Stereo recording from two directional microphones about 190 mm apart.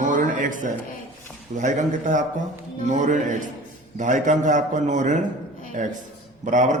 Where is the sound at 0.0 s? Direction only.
45° right (ahead or behind).